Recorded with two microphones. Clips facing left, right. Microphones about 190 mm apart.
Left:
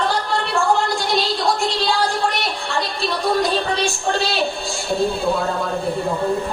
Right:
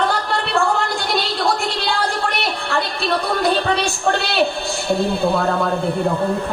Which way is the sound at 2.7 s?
60° right (ahead or behind).